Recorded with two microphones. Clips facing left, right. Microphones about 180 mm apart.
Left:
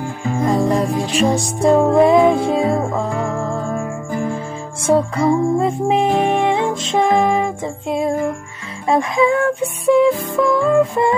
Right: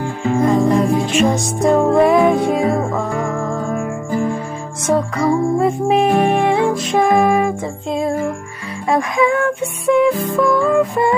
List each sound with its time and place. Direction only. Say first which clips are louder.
0.6 s music: right 3 dB; 35° left (ahead or behind)
4.8 s music: left 1 dB; 30° left (ahead or behind)